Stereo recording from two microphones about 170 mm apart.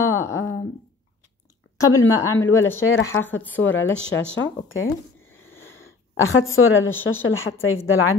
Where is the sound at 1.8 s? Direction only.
20° left (ahead or behind).